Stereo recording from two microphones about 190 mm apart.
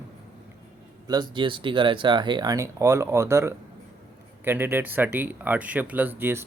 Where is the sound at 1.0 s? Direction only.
20° right (ahead or behind).